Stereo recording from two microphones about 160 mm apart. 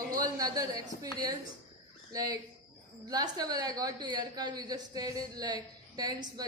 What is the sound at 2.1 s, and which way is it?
A woman's voice, 20° right (ahead or behind).